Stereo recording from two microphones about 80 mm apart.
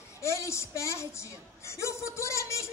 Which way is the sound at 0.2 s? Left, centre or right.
Left.